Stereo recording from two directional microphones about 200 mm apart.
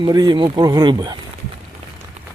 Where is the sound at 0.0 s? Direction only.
20° right (ahead or behind).